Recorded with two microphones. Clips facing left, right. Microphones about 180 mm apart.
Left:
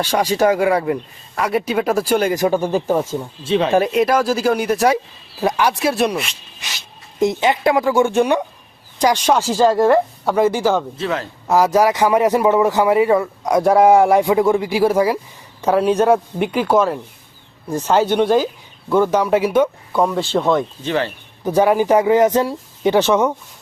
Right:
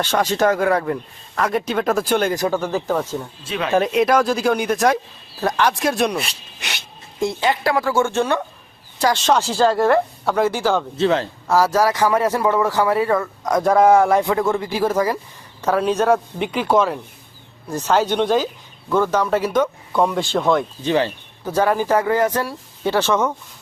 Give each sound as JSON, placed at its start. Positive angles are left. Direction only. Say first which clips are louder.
{"t": 0.0, "sound": "a man's voice", "louder": "left 2 dB", "side_deg": 10}
{"t": 3.4, "sound": "speech", "louder": "left 10 dB", "side_deg": 30}
{"t": 3.7, "sound": "speech", "louder": "right 2 dB", "side_deg": 5}
{"t": 6.6, "sound": "speech", "louder": "right 4 dB", "side_deg": -65}
{"t": 7.2, "sound": "a man's voice", "louder": "left 4 dB", "side_deg": 20}
{"t": 10.9, "sound": "a man's voice", "louder": "right 4 dB", "side_deg": -30}
{"t": 11.4, "sound": "a man's voice", "louder": "left 3 dB", "side_deg": 15}
{"t": 20.8, "sound": "speech", "louder": "right 2 dB", "side_deg": -15}
{"t": 21.4, "sound": "a man's voice", "louder": "left 4 dB", "side_deg": 15}